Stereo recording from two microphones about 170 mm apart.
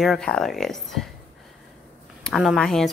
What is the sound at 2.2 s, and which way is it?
Speech, centre (ahead or behind).